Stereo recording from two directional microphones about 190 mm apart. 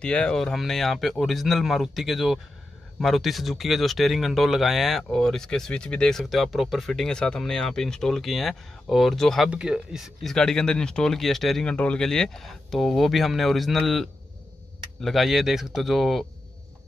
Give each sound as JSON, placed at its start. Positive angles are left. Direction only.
{"t": 0.0, "sound": "speech", "side_deg": 5}